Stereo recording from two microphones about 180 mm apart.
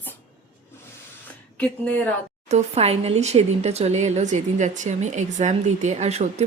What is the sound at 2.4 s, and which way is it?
Speech, 35° right (ahead or behind).